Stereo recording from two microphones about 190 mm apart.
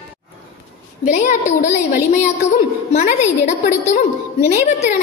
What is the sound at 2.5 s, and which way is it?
A woman's voice, 35° left (ahead or behind).